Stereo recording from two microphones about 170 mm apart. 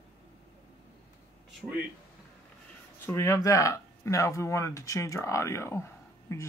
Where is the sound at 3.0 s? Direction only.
15° left (ahead or behind).